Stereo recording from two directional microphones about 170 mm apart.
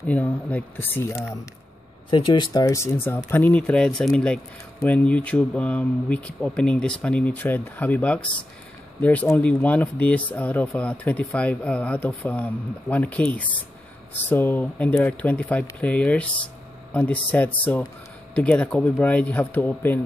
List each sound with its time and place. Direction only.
0.0 s speech: 10° left (ahead or behind)
2.0 s speech: 30° left (ahead or behind); by 20.0 s 10° left (ahead or behind)